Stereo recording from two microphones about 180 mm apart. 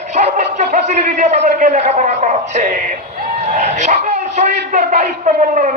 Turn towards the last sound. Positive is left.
turn(degrees=-45)  # may be behind; listen again after turning